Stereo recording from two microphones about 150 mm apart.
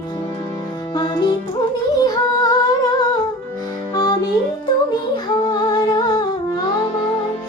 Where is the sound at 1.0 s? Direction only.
30° left (ahead or behind).